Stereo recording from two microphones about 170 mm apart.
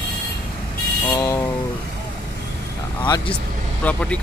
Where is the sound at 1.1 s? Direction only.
20° left (ahead or behind).